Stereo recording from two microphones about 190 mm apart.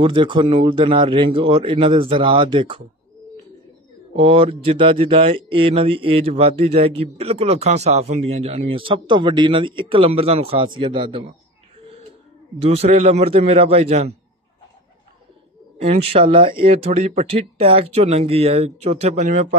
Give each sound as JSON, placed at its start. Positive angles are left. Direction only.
{"t": 0.0, "sound": "speech", "side_deg": -25}
{"t": 4.1, "sound": "speech", "side_deg": -25}
{"t": 12.6, "sound": "speech", "side_deg": -30}
{"t": 15.8, "sound": "speech", "side_deg": -30}